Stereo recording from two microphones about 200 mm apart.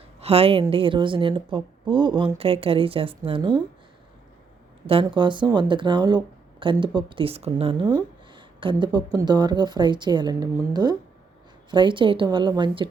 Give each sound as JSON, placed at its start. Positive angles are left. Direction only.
{"t": 0.2, "sound": "speech", "side_deg": -30}
{"t": 4.9, "sound": "speech", "side_deg": -25}